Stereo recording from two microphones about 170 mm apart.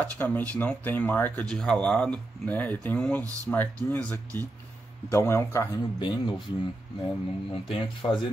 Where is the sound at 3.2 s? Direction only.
20° right (ahead or behind).